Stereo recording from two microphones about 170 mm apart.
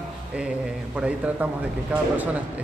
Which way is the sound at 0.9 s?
5° right (ahead or behind).